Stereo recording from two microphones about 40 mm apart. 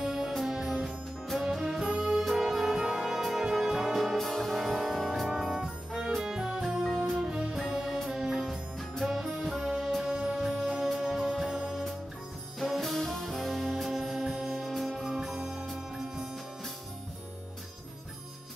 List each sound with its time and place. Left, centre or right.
0.0 s music: centre
1.9 s music: right
2.1 s music: centre
5.5 s music: right
7.5 s music: centre
10.0 s music: right
10.3 s music: centre
11.4 s music: right
12.6 s music: centre
15.0 s music: centre